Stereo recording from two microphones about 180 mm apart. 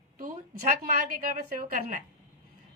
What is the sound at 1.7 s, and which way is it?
Speech, 45° right (ahead or behind).